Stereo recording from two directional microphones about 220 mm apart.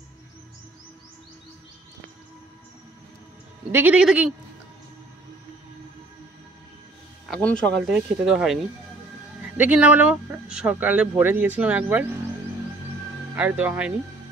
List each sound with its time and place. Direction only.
3.7 s speech: 5° right (ahead or behind)
7.2 s speech: 5° left (ahead or behind)
9.6 s speech: 5° right (ahead or behind)
13.4 s speech: 5° right (ahead or behind)